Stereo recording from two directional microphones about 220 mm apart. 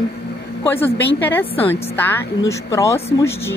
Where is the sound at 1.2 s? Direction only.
10° left (ahead or behind).